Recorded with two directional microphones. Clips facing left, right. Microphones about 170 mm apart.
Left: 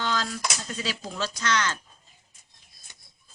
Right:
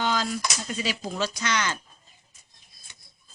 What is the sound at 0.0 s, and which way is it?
Speech, 15° right (ahead or behind).